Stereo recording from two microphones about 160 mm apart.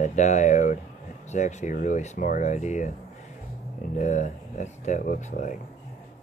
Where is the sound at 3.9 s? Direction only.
50° left (ahead or behind).